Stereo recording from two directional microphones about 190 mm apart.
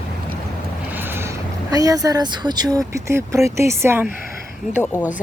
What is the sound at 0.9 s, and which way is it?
Boat, 10° right (ahead or behind).